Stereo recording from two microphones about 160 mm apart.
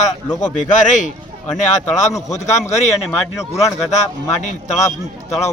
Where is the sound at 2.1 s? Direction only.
20° left (ahead or behind).